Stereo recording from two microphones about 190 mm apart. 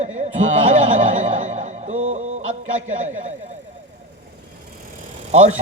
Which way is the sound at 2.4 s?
90° right.